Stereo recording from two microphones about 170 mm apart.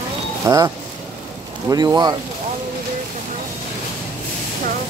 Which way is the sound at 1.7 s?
25° right (ahead or behind).